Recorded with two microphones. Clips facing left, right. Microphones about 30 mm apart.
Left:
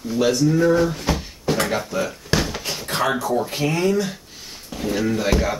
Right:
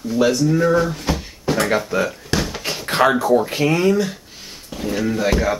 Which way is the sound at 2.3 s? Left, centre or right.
Centre.